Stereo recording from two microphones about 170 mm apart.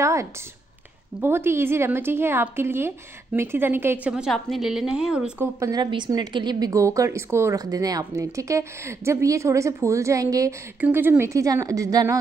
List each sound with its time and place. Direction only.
0.0 s a sound: 15° right (ahead or behind)
1.2 s a woman's voice: 15° right (ahead or behind)
5.6 s a woman's voice: 20° right (ahead or behind)